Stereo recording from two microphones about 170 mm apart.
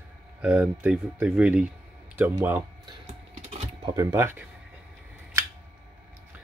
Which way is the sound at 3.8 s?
20° right (ahead or behind).